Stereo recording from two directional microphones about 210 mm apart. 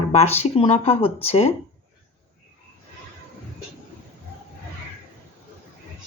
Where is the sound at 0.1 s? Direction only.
30° left (ahead or behind).